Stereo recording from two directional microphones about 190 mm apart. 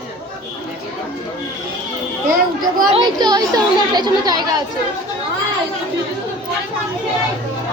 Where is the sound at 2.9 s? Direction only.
20° right (ahead or behind).